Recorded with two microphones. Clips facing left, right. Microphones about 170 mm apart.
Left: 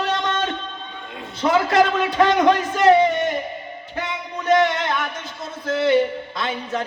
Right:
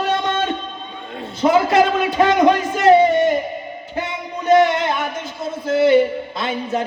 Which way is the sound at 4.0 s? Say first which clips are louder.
Right 3 dB; 25° right (ahead or behind).